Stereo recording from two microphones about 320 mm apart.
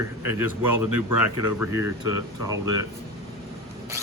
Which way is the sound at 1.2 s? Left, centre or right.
Left.